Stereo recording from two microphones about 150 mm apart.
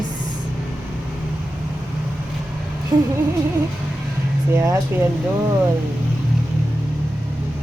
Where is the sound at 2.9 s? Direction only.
30° right (ahead or behind).